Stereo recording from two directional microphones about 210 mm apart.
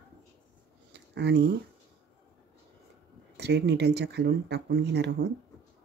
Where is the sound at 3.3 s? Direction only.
55° right (ahead or behind).